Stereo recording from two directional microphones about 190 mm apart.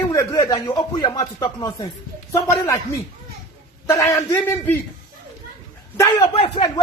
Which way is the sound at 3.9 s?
15° left (ahead or behind).